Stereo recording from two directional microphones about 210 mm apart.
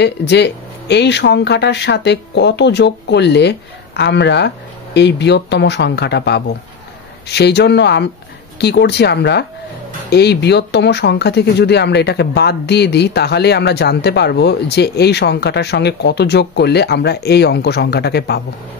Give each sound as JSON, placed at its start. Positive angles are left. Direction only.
{"t": 0.0, "sound": "speech", "side_deg": 55}